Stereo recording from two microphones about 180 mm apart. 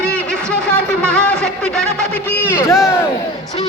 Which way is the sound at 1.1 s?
5° left (ahead or behind).